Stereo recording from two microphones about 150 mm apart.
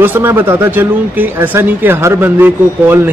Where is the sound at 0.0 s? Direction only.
15° right (ahead or behind).